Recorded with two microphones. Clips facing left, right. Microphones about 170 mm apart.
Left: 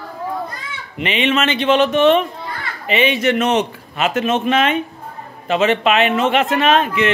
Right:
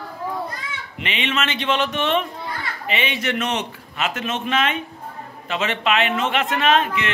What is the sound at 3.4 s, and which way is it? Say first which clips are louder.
Speech: left 8 dB; 50° left (ahead or behind).